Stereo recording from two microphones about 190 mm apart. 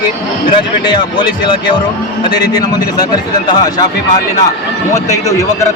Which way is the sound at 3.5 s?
20° left (ahead or behind).